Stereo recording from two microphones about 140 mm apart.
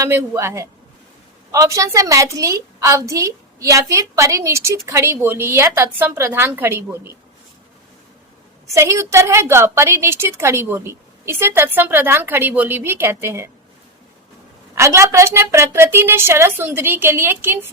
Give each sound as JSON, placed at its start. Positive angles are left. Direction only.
{"t": 0.0, "sound": "a woman's voice", "side_deg": -20}
{"t": 8.7, "sound": "a woman's voice", "side_deg": -20}
{"t": 14.8, "sound": "a woman's voice", "side_deg": -20}